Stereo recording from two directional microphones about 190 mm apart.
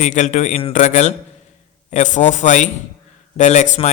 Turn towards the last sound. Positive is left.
turn(degrees=40)  # may be behind; listen again after turning